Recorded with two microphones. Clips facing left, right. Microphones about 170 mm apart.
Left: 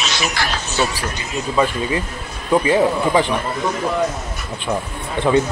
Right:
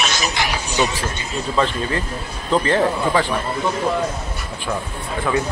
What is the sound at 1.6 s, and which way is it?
Speech, 10° left (ahead or behind).